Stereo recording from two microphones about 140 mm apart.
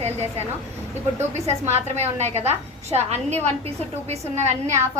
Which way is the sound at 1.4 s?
50° right (ahead or behind).